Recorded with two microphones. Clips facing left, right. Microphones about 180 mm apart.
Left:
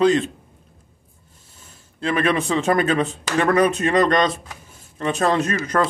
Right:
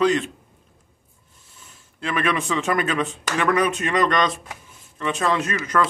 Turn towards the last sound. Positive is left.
turn(degrees=35)  # may be behind; listen again after turning